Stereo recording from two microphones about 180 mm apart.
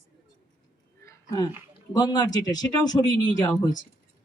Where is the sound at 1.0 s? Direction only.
15° left (ahead or behind).